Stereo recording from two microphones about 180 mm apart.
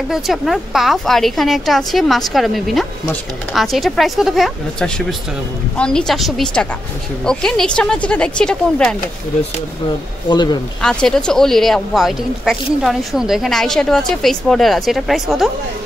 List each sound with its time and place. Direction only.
0.1 s speech: centre (ahead or behind)
10.3 s speech: 25° left (ahead or behind)
10.8 s speech: 5° left (ahead or behind)